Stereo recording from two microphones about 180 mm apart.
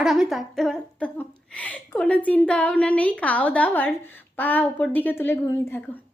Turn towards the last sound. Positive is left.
turn(degrees=10)  # may be behind; listen again after turning